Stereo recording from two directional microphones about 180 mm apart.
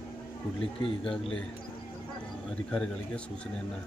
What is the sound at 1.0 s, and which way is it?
Speech, 5° left (ahead or behind).